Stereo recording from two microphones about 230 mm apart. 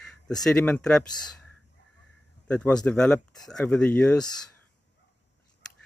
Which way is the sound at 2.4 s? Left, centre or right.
Centre.